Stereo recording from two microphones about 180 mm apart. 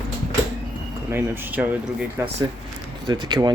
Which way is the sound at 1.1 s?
10° right (ahead or behind).